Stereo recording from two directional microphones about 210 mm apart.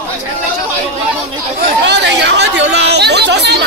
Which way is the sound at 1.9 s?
55° right (ahead or behind).